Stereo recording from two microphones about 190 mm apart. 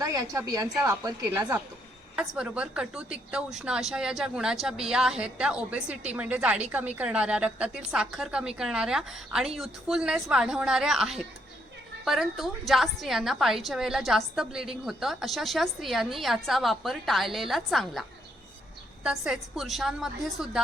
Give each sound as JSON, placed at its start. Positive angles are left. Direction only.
{"t": 0.0, "sound": "a woman's voice", "side_deg": -20}
{"t": 2.1, "sound": "a woman's voice", "side_deg": -5}
{"t": 19.0, "sound": "a woman's voice", "side_deg": -5}